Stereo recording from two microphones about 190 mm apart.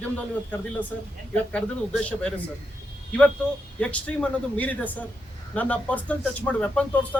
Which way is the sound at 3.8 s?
5° left (ahead or behind).